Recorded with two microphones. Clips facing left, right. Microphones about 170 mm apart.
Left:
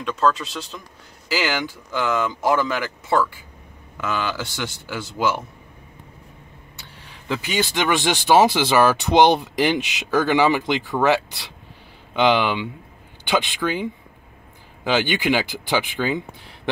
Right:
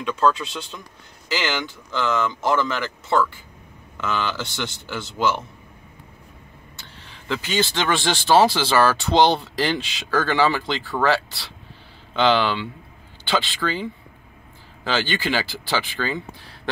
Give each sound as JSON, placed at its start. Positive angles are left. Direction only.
{"t": 0.0, "sound": "speech", "side_deg": 0}
{"t": 7.0, "sound": "speech", "side_deg": 15}
{"t": 14.9, "sound": "speech", "side_deg": 15}